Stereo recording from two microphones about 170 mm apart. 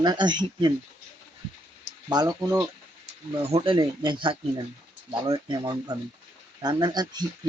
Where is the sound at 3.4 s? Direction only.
35° right (ahead or behind).